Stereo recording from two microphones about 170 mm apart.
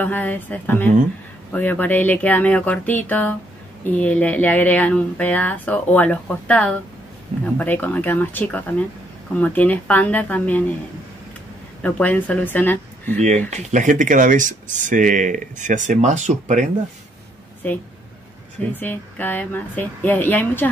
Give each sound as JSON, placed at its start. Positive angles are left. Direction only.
{"t": 0.0, "sound": "speech", "side_deg": 10}
{"t": 11.8, "sound": "speech", "side_deg": 10}
{"t": 13.5, "sound": "speech", "side_deg": -45}
{"t": 17.6, "sound": "speech", "side_deg": 10}